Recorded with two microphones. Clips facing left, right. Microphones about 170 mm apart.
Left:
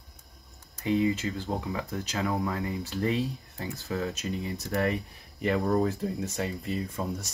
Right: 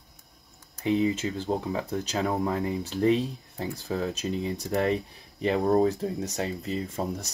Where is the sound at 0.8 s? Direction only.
25° right (ahead or behind).